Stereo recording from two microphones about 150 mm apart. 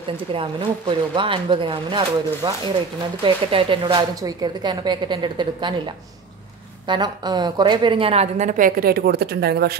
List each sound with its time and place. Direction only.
0.3 s a woman's voice: 35° right (ahead or behind)
6.9 s a woman's voice: 30° right (ahead or behind); by 9.8 s 90° right